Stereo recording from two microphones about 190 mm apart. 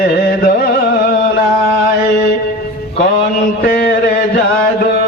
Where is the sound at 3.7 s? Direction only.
50° left (ahead or behind).